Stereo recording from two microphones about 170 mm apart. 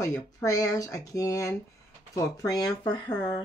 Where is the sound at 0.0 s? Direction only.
20° left (ahead or behind).